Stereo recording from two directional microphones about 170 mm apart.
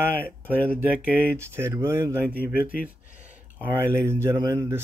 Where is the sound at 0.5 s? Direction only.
10° left (ahead or behind).